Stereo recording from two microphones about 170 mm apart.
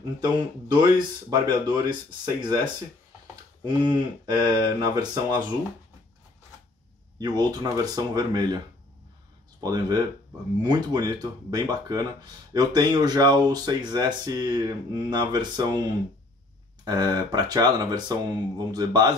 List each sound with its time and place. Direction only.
0.4 s speech: 25° right (ahead or behind)
7.2 s speech: 25° right (ahead or behind)
9.6 s speech: 25° right (ahead or behind)